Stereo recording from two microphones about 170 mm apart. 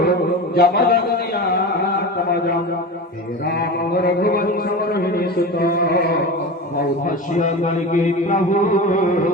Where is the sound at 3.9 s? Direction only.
65° left (ahead or behind).